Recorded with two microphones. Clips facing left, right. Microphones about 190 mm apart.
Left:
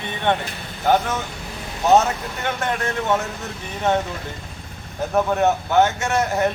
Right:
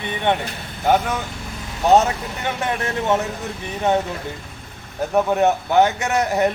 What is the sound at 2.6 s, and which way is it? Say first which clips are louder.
Speech: right 2 dB; 15° right (ahead or behind).